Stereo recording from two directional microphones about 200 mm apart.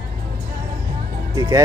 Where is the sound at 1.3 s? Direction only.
20° right (ahead or behind).